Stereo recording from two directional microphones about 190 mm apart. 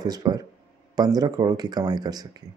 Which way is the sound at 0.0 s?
20° right (ahead or behind).